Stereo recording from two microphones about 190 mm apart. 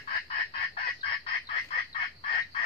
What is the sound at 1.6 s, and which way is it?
Bird, 40° left (ahead or behind).